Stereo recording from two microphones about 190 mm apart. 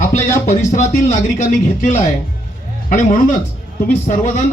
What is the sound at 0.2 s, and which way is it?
Music, 15° left (ahead or behind).